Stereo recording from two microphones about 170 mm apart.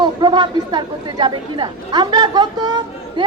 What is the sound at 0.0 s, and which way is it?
A woman's voice, 25° right (ahead or behind).